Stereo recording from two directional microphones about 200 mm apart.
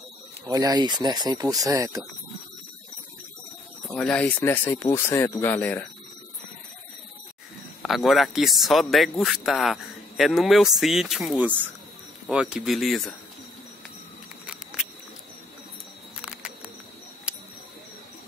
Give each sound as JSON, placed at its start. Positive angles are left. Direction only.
{"t": 0.5, "sound": "speech", "side_deg": -20}
{"t": 3.9, "sound": "speech", "side_deg": 5}
{"t": 7.8, "sound": "speech", "side_deg": 0}
{"t": 14.5, "sound": "a sound", "side_deg": -5}
{"t": 16.2, "sound": "music", "side_deg": -5}
{"t": 17.3, "sound": "a sound", "side_deg": -5}